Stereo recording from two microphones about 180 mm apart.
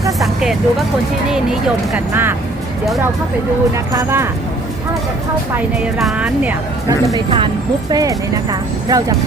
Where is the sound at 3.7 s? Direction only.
15° right (ahead or behind).